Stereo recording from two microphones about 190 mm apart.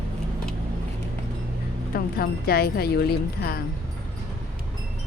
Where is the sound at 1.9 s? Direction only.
50° left (ahead or behind).